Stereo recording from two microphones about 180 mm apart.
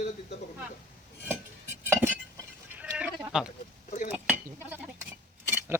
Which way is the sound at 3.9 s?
45° left (ahead or behind).